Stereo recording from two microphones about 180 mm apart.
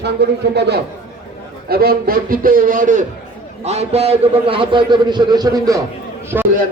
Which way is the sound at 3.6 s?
35° right (ahead or behind).